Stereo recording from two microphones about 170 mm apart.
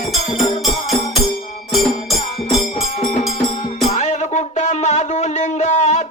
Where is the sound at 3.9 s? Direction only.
45° left (ahead or behind).